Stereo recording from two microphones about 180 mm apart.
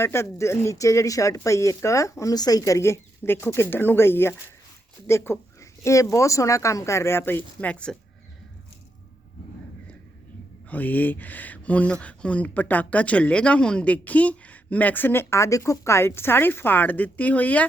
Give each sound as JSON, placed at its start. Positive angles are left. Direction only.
{"t": 0.0, "sound": "speech", "side_deg": 15}
{"t": 10.7, "sound": "speech", "side_deg": 10}